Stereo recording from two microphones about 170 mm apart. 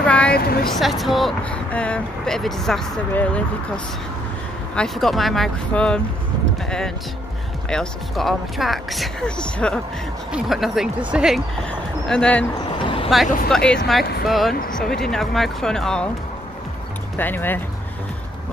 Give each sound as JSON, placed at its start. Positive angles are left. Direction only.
{"t": 0.0, "sound": "a sound", "side_deg": 5}
{"t": 0.3, "sound": "a woman's voice", "side_deg": 65}
{"t": 0.7, "sound": "speech", "side_deg": 0}
{"t": 7.7, "sound": "speech", "side_deg": 5}
{"t": 12.1, "sound": "speech", "side_deg": 5}
{"t": 12.8, "sound": "vehicle", "side_deg": 35}
{"t": 13.5, "sound": "speech", "side_deg": 5}
{"t": 17.2, "sound": "speech", "side_deg": 10}